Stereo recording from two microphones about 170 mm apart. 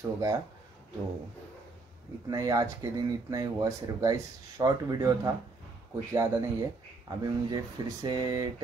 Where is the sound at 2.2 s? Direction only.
20° right (ahead or behind).